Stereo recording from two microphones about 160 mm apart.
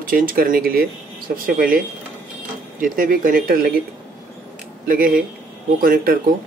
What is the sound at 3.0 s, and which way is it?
Speech, 60° right (ahead or behind).